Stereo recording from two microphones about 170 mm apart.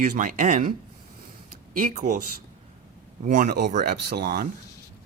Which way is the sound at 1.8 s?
50° right (ahead or behind).